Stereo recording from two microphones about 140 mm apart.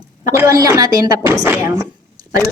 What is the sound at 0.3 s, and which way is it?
A woman's voice, 25° right (ahead or behind).